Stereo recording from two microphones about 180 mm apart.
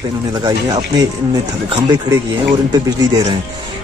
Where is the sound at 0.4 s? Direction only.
25° right (ahead or behind).